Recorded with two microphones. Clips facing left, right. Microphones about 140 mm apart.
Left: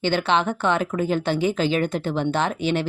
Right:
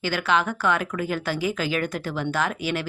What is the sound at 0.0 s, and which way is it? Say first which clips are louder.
Speech: left 3 dB; 25° left (ahead or behind).